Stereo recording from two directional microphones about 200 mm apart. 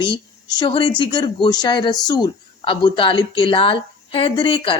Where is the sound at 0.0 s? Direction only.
20° left (ahead or behind).